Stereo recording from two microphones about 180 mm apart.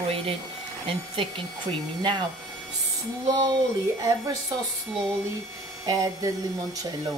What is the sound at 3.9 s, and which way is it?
Speech, 15° right (ahead or behind).